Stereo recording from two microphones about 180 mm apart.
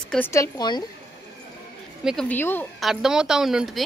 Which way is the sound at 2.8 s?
5° right (ahead or behind).